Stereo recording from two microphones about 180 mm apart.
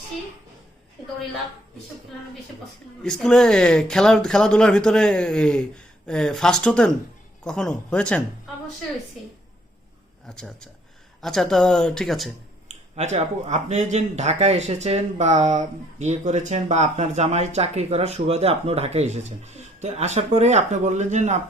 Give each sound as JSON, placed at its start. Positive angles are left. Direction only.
{"t": 3.0, "sound": "speech", "side_deg": 5}
{"t": 10.2, "sound": "speech", "side_deg": 5}
{"t": 12.6, "sound": "speech", "side_deg": -40}